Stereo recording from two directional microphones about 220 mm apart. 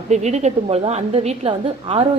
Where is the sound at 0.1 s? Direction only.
30° right (ahead or behind).